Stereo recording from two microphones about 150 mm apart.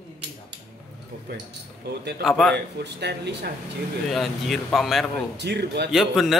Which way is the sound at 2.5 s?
90° right.